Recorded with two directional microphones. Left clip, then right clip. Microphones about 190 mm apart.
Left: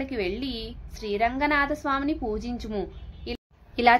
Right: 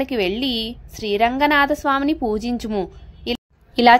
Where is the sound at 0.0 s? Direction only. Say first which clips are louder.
Right 9 dB; 40° right (ahead or behind).